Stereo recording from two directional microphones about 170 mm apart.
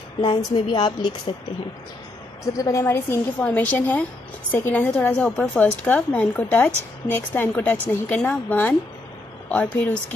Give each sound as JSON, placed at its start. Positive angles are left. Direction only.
{"t": 0.2, "sound": "a woman's voice", "side_deg": 30}
{"t": 2.5, "sound": "a woman's voice", "side_deg": 20}